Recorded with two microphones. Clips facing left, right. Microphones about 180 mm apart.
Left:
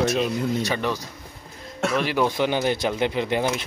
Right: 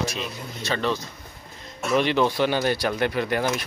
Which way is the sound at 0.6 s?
15° left (ahead or behind).